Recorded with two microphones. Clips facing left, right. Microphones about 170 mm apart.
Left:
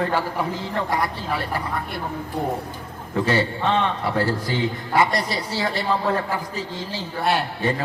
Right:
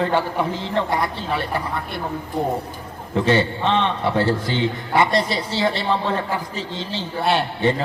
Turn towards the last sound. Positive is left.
turn(degrees=-25)  # may be behind; listen again after turning